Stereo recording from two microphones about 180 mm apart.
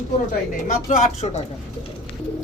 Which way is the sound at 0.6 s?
45° left (ahead or behind).